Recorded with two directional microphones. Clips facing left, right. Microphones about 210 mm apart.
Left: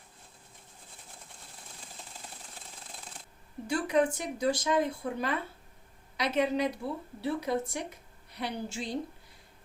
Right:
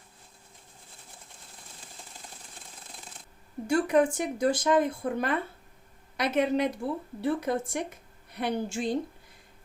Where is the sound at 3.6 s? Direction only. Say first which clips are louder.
Right 4 dB; 55° right (ahead or behind).